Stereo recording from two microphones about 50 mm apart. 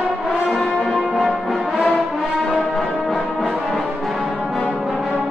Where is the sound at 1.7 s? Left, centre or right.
Centre.